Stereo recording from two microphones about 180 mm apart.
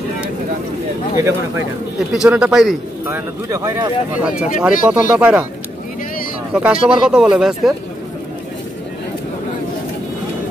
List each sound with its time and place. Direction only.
2.1 s speech: 5° right (ahead or behind)
3.1 s speech: 15° right (ahead or behind)
4.1 s speech: 5° right (ahead or behind)
6.5 s speech: 5° right (ahead or behind)